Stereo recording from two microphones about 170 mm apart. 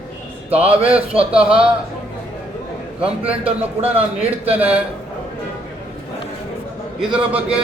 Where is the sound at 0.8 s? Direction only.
5° right (ahead or behind).